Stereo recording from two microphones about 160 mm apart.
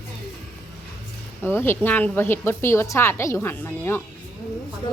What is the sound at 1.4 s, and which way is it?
Speech, 15° left (ahead or behind).